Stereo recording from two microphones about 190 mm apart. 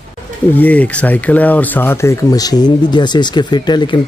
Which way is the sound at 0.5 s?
10° left (ahead or behind).